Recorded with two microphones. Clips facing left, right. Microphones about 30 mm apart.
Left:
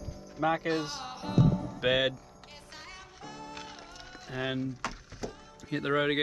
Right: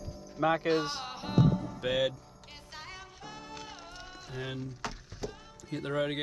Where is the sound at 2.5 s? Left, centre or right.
Centre.